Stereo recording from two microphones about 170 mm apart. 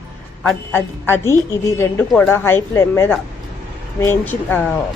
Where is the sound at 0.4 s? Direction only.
10° left (ahead or behind).